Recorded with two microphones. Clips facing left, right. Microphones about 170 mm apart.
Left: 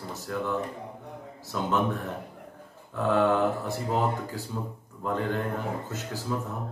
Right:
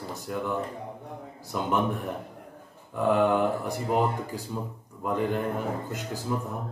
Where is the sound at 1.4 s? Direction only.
15° right (ahead or behind).